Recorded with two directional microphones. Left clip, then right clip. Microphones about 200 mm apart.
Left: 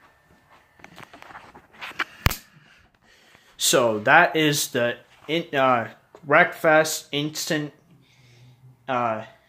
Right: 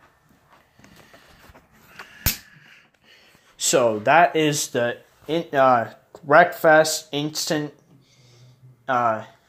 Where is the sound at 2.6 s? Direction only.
Centre (ahead or behind).